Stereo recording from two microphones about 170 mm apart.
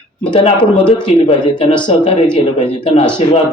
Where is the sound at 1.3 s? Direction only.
30° left (ahead or behind).